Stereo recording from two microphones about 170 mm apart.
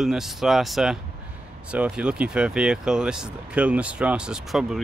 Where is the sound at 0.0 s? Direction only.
Centre (ahead or behind).